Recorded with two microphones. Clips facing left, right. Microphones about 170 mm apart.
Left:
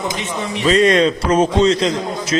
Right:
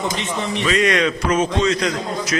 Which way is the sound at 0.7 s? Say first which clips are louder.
Left 6 dB; 30° left (ahead or behind).